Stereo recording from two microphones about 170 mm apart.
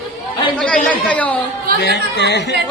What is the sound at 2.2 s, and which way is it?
Speech, 85° left.